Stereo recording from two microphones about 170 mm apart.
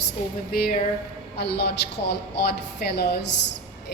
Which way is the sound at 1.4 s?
75° left (ahead or behind).